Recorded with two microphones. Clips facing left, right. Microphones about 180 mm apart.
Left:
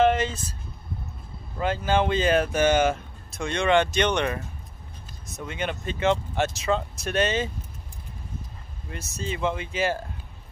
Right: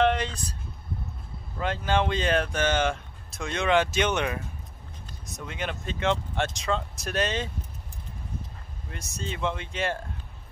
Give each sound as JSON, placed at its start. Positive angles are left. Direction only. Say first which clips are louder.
{"t": 0.0, "sound": "speech", "louder": "left 3 dB", "side_deg": 5}
{"t": 1.6, "sound": "speech", "louder": "left 3 dB", "side_deg": 5}
{"t": 8.9, "sound": "speech", "louder": "left 3 dB", "side_deg": 5}